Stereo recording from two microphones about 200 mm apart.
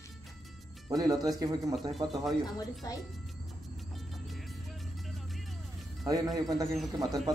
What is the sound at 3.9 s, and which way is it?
Music, centre (ahead or behind).